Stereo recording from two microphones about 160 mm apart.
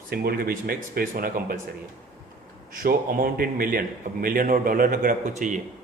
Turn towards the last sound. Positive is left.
turn(degrees=-50)  # may be behind; listen again after turning